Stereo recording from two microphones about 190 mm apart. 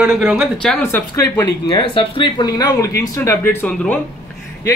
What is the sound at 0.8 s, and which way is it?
Speech, 15° left (ahead or behind).